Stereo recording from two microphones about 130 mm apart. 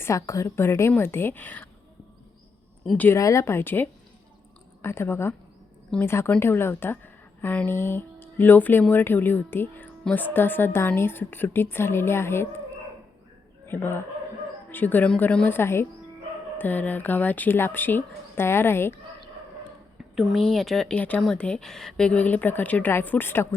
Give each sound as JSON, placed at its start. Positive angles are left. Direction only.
{"t": 0.0, "sound": "a woman's voice", "side_deg": 25}
{"t": 2.8, "sound": "speech", "side_deg": 5}
{"t": 3.2, "sound": "a woman's voice", "side_deg": 25}
{"t": 13.7, "sound": "a man's voice", "side_deg": 15}
{"t": 20.1, "sound": "a woman's voice", "side_deg": 0}